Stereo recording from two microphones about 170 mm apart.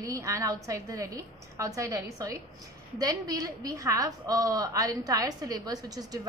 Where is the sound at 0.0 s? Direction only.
20° right (ahead or behind).